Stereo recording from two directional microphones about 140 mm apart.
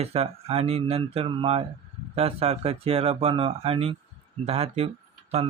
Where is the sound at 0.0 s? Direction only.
45° right (ahead or behind).